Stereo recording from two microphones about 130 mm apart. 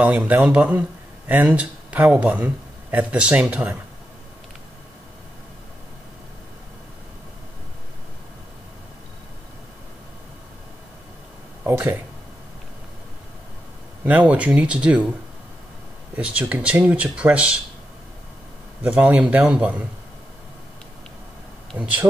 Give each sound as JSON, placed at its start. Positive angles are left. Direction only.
{"t": 0.0, "sound": "speech", "side_deg": -10}
{"t": 11.6, "sound": "speech", "side_deg": -15}
{"t": 14.0, "sound": "speech", "side_deg": -10}
{"t": 16.2, "sound": "speech", "side_deg": -10}
{"t": 18.8, "sound": "speech", "side_deg": -10}
{"t": 21.7, "sound": "speech", "side_deg": -10}